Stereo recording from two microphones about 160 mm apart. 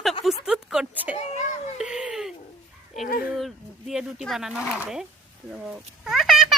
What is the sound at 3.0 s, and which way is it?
Dog, 60° left (ahead or behind).